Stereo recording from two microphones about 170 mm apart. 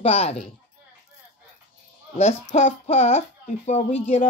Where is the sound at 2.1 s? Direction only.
40° left (ahead or behind).